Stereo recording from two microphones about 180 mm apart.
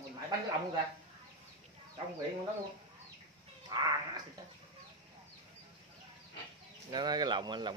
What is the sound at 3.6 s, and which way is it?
Cat, 25° right (ahead or behind).